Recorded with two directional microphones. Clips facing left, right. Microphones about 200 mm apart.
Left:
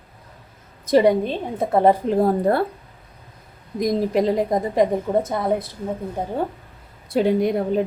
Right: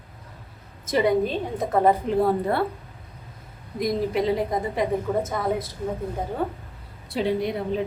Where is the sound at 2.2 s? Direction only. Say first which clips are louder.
Left 4 dB; 45° left (ahead or behind).